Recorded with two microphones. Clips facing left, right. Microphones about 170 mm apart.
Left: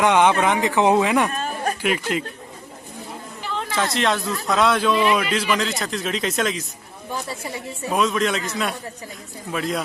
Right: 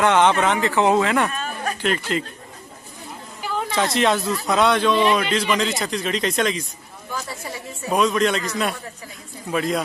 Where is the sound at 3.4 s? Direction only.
10° right (ahead or behind).